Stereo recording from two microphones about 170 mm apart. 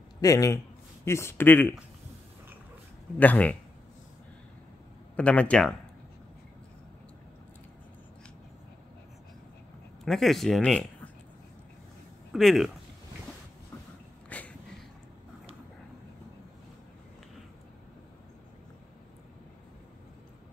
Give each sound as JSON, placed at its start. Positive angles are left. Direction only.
{"t": 0.2, "sound": "a man's voice", "side_deg": 20}
{"t": 3.2, "sound": "a man's voice", "side_deg": 10}
{"t": 5.1, "sound": "a man's voice", "side_deg": 5}
{"t": 10.0, "sound": "speech", "side_deg": 0}
{"t": 12.3, "sound": "speech", "side_deg": 0}
{"t": 14.3, "sound": "a sound", "side_deg": 10}